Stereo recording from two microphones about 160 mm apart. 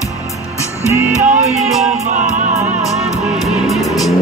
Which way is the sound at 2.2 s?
50° right (ahead or behind).